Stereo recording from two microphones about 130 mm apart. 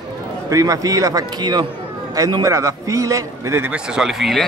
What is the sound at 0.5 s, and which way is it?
A man's voice, 25° right (ahead or behind).